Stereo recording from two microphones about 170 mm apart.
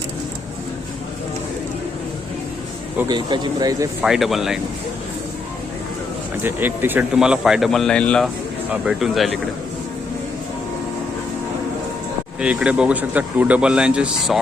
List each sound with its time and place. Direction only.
3.1 s speech: 25° right (ahead or behind)
4.0 s speech: centre (ahead or behind)
6.4 s speech: 10° right (ahead or behind)
12.4 s speech: 5° right (ahead or behind)